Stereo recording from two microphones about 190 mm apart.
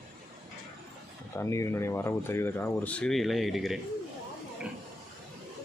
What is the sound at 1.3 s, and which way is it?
Speech, 15° left (ahead or behind).